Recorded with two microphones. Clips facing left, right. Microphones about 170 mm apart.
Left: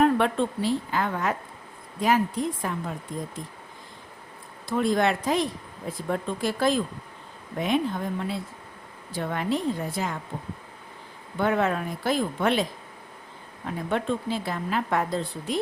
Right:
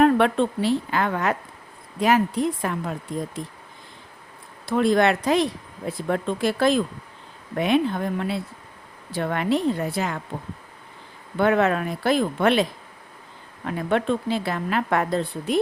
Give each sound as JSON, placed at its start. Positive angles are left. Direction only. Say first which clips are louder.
{"t": 0.0, "sound": "a woman's voice", "louder": "right 4 dB", "side_deg": -75}
{"t": 4.6, "sound": "a woman's voice", "louder": "right 4 dB", "side_deg": -75}
{"t": 11.3, "sound": "a woman's voice", "louder": "right 4 dB", "side_deg": -70}
{"t": 13.7, "sound": "a woman's voice", "louder": "right 4 dB", "side_deg": -75}